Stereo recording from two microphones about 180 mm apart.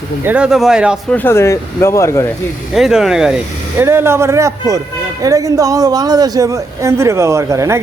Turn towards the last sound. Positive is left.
turn(degrees=-15)  # may be behind; listen again after turning